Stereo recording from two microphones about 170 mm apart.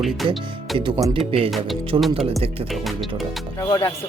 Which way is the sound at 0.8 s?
25° right (ahead or behind).